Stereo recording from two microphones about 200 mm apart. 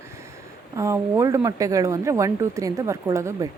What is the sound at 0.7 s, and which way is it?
A woman's voice, 15° right (ahead or behind).